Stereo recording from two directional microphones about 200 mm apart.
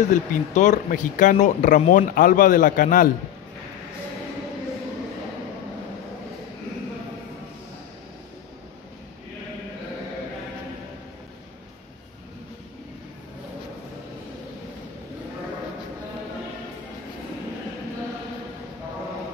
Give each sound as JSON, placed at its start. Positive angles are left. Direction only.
{"t": 0.0, "sound": "speech", "side_deg": 40}